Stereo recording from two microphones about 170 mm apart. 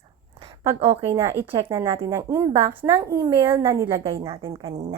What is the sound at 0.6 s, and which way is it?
A woman's voice, 15° right (ahead or behind).